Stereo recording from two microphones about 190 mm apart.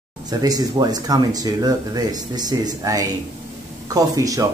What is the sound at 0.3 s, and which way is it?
Speech, 20° right (ahead or behind).